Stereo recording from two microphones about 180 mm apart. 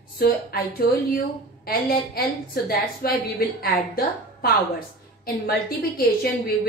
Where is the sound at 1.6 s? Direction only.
55° left (ahead or behind).